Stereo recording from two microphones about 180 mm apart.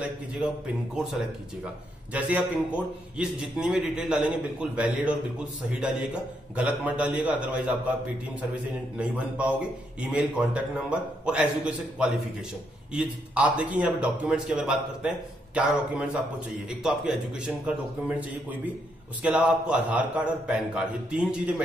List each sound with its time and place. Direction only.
0.0 s a man's voice: 5° right (ahead or behind)
2.1 s a man's voice: 10° right (ahead or behind)
8.9 s a man's voice: 5° right (ahead or behind)